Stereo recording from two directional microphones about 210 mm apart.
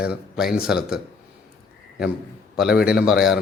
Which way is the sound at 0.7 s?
5° right (ahead or behind).